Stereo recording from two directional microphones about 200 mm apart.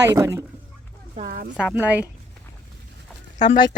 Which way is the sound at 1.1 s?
45° right (ahead or behind).